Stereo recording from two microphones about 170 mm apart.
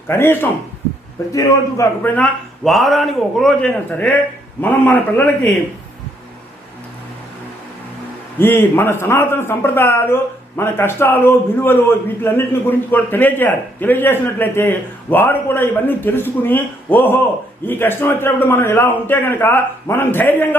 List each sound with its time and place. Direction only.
0.1 s a man's voice: 15° left (ahead or behind)
2.6 s a man's voice: centre (ahead or behind)
8.4 s a man's voice: 10° left (ahead or behind)